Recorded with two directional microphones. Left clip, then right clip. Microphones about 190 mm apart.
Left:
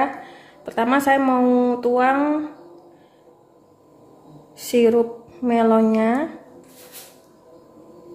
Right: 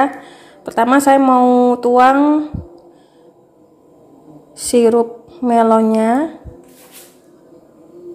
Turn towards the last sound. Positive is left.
turn(degrees=-25)  # may be behind; listen again after turning